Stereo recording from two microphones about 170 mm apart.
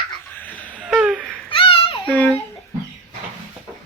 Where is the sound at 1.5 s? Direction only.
30° left (ahead or behind).